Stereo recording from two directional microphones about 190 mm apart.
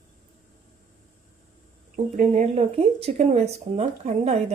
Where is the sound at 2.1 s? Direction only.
35° right (ahead or behind).